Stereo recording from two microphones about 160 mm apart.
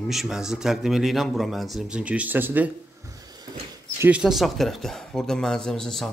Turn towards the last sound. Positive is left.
turn(degrees=5)  # may be behind; listen again after turning